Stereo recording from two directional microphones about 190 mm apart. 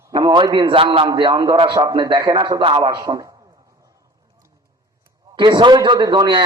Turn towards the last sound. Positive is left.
turn(degrees=-25)  # may be behind; listen again after turning